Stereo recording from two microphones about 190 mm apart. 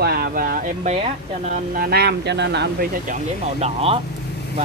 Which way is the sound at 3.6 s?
35° right (ahead or behind).